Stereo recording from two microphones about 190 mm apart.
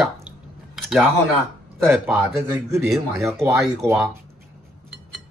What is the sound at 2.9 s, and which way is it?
Speech, centre (ahead or behind).